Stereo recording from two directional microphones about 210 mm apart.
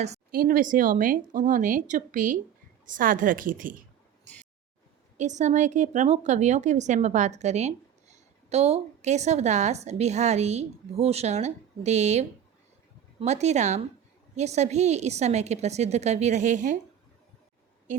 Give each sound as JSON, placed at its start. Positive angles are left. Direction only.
{"t": 0.0, "sound": "speech", "side_deg": -40}
{"t": 5.1, "sound": "speech", "side_deg": -35}